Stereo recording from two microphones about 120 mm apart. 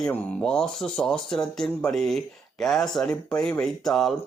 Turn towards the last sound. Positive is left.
turn(degrees=0)  # may be behind; listen again after turning